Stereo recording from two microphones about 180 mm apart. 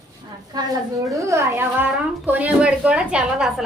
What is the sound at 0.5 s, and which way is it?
A woman's voice, 20° right (ahead or behind).